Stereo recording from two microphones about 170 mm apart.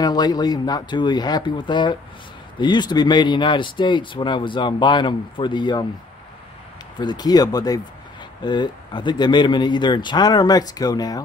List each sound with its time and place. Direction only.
0.0 s speech: 25° left (ahead or behind)
7.0 s speech: 25° left (ahead or behind)